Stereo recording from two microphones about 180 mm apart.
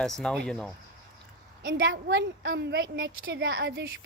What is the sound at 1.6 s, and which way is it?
A woman's voice, 85° right.